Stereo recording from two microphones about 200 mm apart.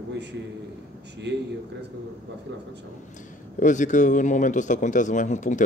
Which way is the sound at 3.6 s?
40° left (ahead or behind).